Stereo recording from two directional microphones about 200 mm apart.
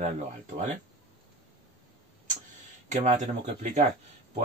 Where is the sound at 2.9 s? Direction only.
35° right (ahead or behind).